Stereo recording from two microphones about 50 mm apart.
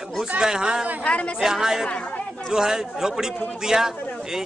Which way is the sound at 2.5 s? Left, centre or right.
Centre.